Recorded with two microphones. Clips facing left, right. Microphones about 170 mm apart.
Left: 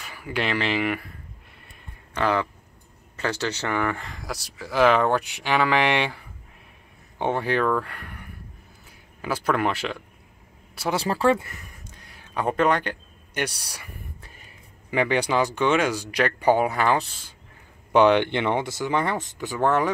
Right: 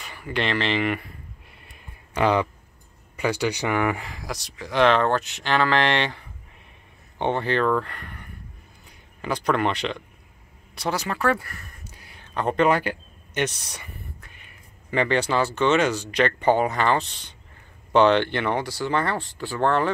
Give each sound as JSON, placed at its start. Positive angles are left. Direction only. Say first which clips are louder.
{"t": 0.0, "sound": "speech", "louder": "right 1 dB", "side_deg": 5}
{"t": 2.1, "sound": "speech", "louder": "right 3 dB", "side_deg": -20}
{"t": 10.9, "sound": "speech", "louder": "left 3 dB", "side_deg": 30}
{"t": 12.2, "sound": "a sound", "louder": "right 1 dB", "side_deg": 5}
{"t": 12.6, "sound": "speech", "louder": "right 2 dB", "side_deg": -5}
{"t": 13.3, "sound": "speech", "louder": "right 3 dB", "side_deg": 10}
{"t": 14.2, "sound": "a sound", "louder": "left 2 dB", "side_deg": 40}
{"t": 14.9, "sound": "speech", "louder": "even", "side_deg": 10}